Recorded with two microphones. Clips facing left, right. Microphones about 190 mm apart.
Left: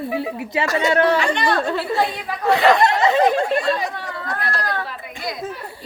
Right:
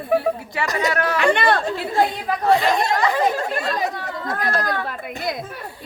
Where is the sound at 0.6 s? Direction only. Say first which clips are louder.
Left 2 dB; 20° right (ahead or behind).